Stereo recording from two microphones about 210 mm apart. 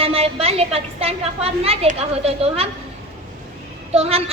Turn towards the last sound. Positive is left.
turn(degrees=-30)  # may be behind; listen again after turning